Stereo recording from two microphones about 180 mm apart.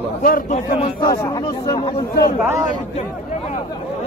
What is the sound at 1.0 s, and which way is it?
Speech, 20° left (ahead or behind).